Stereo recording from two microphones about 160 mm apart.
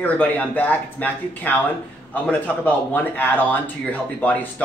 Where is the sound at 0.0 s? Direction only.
10° left (ahead or behind).